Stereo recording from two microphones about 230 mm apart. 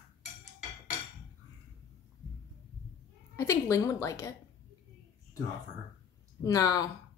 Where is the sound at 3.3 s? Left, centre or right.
Centre.